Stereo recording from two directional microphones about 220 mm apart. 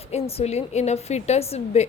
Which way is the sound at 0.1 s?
25° left (ahead or behind).